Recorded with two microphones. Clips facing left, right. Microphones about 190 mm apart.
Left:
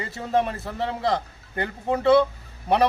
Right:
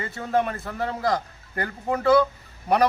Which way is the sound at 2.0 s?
25° left (ahead or behind).